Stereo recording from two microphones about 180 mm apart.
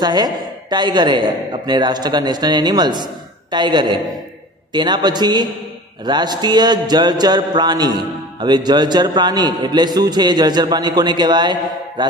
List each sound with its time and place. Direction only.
0.0 s mantra: 20° right (ahead or behind)